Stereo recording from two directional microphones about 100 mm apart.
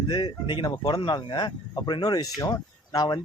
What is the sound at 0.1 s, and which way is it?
Speech, 50° left (ahead or behind).